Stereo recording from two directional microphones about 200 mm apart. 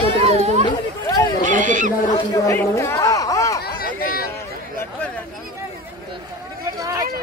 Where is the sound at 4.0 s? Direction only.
50° left (ahead or behind).